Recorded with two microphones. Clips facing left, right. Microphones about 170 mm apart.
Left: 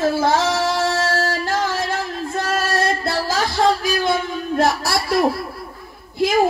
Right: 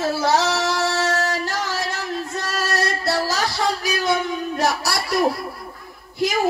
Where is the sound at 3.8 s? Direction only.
55° left (ahead or behind).